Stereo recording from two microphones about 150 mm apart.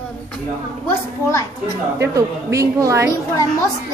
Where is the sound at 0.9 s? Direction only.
20° left (ahead or behind).